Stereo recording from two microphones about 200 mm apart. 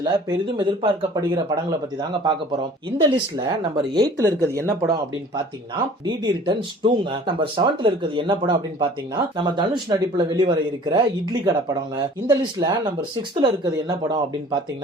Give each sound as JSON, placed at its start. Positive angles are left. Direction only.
{"t": 0.5, "sound": "speech", "side_deg": -25}